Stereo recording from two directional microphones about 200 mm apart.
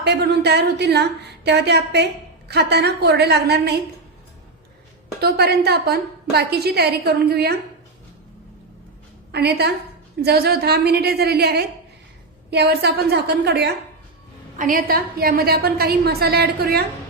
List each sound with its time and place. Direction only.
0.0 s a woman's voice: 55° right (ahead or behind)
5.2 s a woman's voice: 55° right (ahead or behind)
9.3 s a woman's voice: 55° right (ahead or behind)
14.6 s a woman's voice: 45° right (ahead or behind)